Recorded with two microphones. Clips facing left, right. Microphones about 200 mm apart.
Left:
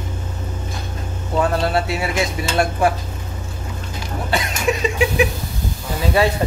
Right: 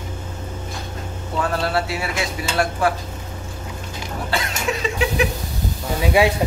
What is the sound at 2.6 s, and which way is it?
Speech, 20° left (ahead or behind).